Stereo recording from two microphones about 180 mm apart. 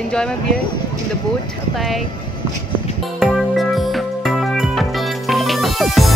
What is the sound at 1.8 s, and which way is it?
Speech, centre (ahead or behind).